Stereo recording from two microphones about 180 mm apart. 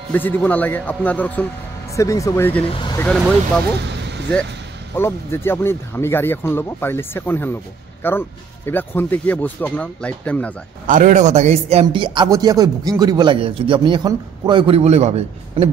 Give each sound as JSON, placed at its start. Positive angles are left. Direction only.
{"t": 0.1, "sound": "speech", "side_deg": 10}
{"t": 2.6, "sound": "speech", "side_deg": 30}
{"t": 4.9, "sound": "speech", "side_deg": 15}
{"t": 10.9, "sound": "speech", "side_deg": -45}